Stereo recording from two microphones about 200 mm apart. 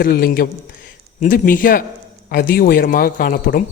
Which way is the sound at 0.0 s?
50° left (ahead or behind).